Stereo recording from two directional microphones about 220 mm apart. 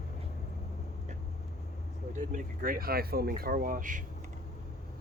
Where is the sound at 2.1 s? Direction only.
35° right (ahead or behind).